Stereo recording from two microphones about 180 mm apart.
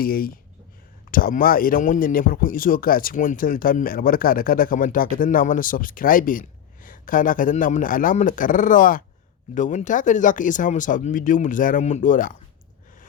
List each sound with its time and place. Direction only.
0.0 s speech: 55° left (ahead or behind)